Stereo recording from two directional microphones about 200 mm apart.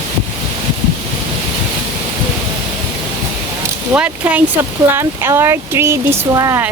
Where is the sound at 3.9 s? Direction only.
5° right (ahead or behind).